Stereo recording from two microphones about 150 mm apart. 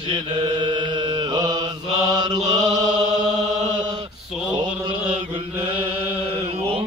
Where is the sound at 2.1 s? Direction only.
25° right (ahead or behind).